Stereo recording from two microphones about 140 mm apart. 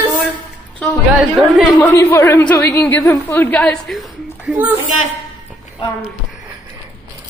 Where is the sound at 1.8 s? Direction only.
20° left (ahead or behind); by 4.5 s centre (ahead or behind).